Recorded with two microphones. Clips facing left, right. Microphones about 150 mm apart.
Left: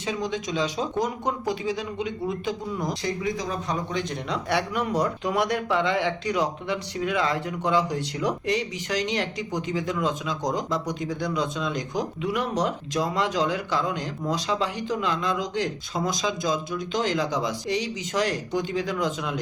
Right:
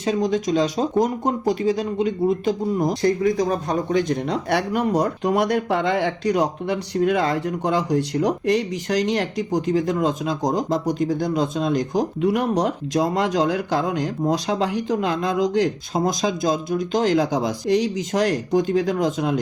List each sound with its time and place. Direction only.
0.0 s speech: 45° right (ahead or behind)